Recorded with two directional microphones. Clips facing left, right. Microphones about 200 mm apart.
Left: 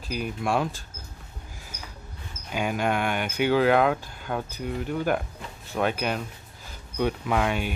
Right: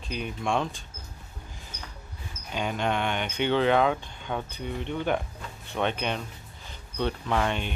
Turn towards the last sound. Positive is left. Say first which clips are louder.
# left 2 dB
turn(degrees=5)  # may be behind; listen again after turning